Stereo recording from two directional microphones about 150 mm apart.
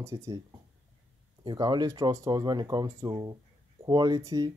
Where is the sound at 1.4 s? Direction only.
30° right (ahead or behind).